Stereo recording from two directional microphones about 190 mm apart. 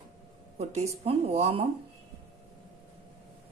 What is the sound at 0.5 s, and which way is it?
A woman's voice, 35° right (ahead or behind).